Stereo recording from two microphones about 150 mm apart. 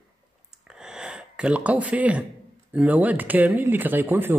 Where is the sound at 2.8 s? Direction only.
10° right (ahead or behind).